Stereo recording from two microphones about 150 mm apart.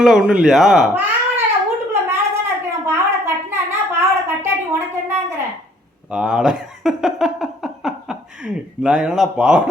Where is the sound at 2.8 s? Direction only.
15° right (ahead or behind).